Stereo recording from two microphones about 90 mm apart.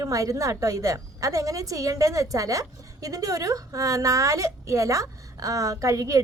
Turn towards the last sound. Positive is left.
turn(degrees=-35)  # may be behind; listen again after turning